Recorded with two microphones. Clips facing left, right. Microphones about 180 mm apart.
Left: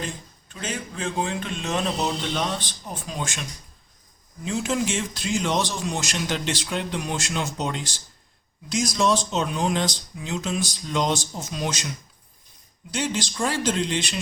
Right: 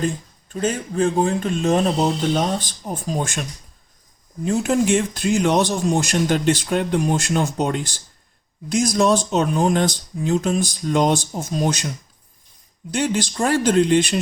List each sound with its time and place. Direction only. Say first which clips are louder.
0.5 s speech: right 10 dB; 45° right (ahead or behind)
4.4 s speech: right 7 dB; 55° right (ahead or behind)